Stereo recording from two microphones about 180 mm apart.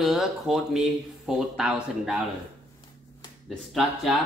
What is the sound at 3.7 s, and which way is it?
Speech, centre (ahead or behind).